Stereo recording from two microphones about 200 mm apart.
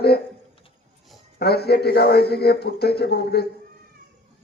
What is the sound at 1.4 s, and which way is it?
A man's voice, 55° left (ahead or behind).